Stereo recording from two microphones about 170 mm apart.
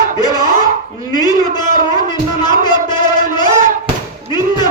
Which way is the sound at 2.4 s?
25° left (ahead or behind).